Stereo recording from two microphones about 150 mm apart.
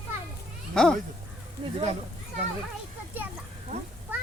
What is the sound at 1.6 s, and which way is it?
Speech, 35° right (ahead or behind).